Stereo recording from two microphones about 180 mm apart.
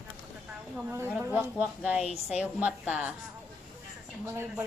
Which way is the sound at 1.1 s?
10° right (ahead or behind).